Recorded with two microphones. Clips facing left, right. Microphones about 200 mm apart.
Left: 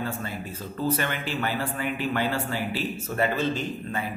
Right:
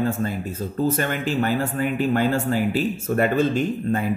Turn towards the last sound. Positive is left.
turn(degrees=-50)  # may be behind; listen again after turning